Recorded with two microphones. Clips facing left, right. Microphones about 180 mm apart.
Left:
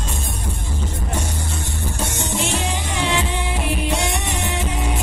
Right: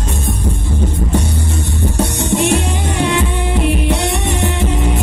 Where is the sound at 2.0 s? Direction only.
65° right (ahead or behind).